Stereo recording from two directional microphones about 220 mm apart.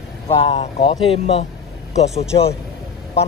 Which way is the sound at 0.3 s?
25° left (ahead or behind).